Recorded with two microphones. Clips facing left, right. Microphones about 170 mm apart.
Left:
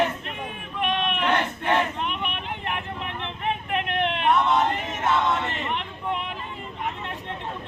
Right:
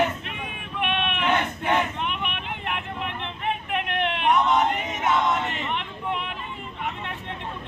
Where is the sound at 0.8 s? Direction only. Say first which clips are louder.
Left 1 dB; 40° left (ahead or behind).